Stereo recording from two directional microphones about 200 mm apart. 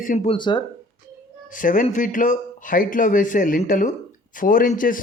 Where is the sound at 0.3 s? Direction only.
25° left (ahead or behind).